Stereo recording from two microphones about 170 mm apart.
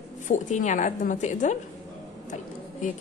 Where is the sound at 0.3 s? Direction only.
45° left (ahead or behind).